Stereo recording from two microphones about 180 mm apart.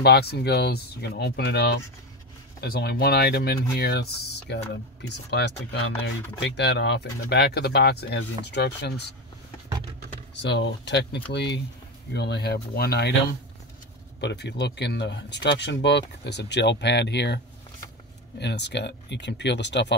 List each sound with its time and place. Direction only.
0.0 s speech: 65° left (ahead or behind)
10.4 s speech: 80° left; by 13.1 s 60° left (ahead or behind)
14.2 s speech: 70° left (ahead or behind)
18.4 s speech: 70° left (ahead or behind)